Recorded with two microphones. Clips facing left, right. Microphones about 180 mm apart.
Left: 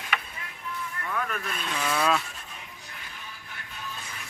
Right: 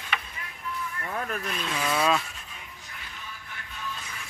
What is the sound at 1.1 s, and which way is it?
Vehicle, 35° right (ahead or behind).